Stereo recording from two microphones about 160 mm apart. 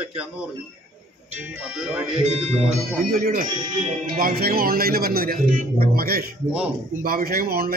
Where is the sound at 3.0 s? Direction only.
60° right (ahead or behind).